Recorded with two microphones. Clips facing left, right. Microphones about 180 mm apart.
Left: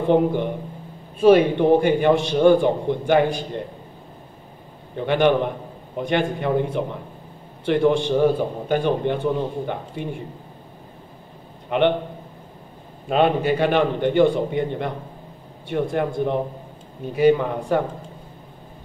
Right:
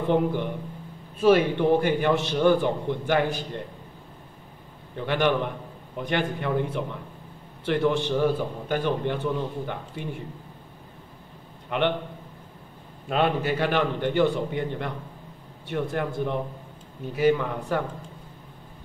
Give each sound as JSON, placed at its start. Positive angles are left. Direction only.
{"t": 0.0, "sound": "a man's voice", "side_deg": 25}
{"t": 4.9, "sound": "a man's voice", "side_deg": 20}
{"t": 11.7, "sound": "a man's voice", "side_deg": 20}
{"t": 13.1, "sound": "a man's voice", "side_deg": 20}